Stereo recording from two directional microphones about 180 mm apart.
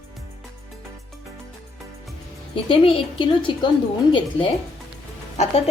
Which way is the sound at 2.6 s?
30° left (ahead or behind).